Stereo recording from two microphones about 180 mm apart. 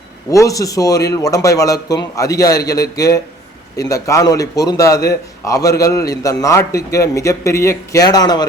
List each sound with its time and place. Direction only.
0.3 s a man's voice: 20° left (ahead or behind)